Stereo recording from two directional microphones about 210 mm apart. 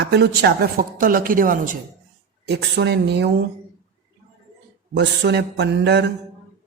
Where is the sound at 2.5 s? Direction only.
50° right (ahead or behind).